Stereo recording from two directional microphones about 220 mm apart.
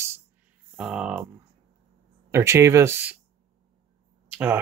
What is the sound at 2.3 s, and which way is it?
Speech, 15° right (ahead or behind).